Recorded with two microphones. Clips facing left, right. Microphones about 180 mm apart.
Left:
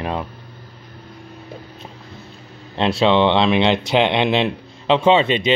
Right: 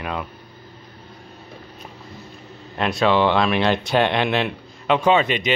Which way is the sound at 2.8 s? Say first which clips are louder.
Left 3 dB; 25° left (ahead or behind).